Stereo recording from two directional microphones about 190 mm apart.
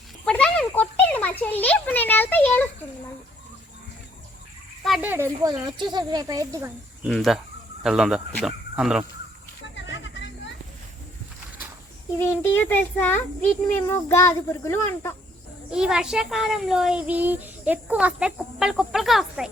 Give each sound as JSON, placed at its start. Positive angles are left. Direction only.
{"t": 0.3, "sound": "a sound", "side_deg": 5}
{"t": 4.8, "sound": "speech", "side_deg": -5}
{"t": 7.0, "sound": "a child's voice", "side_deg": 0}
{"t": 9.7, "sound": "a sound", "side_deg": 70}
{"t": 12.2, "sound": "a child's voice", "side_deg": 15}
{"t": 15.7, "sound": "a child's voice", "side_deg": -5}